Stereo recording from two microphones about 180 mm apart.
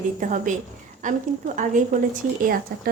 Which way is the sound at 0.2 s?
45° right (ahead or behind).